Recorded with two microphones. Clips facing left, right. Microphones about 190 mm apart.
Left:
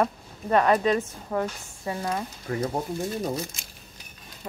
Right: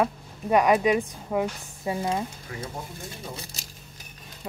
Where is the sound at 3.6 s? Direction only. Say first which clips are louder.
Right 3 dB; 40° right (ahead or behind).